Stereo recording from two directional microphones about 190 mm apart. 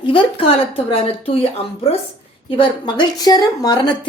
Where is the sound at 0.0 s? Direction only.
25° left (ahead or behind).